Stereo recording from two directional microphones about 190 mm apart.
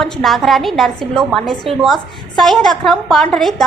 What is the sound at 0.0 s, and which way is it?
A woman's voice, centre (ahead or behind).